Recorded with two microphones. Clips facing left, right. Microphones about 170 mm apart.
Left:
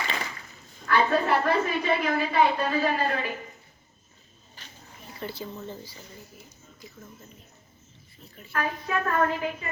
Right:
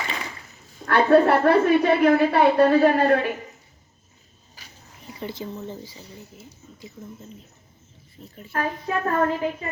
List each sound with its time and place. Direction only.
0.9 s a woman's voice: 60° right (ahead or behind)
5.2 s speech: 20° right (ahead or behind)
8.2 s a woman's voice: 40° right (ahead or behind)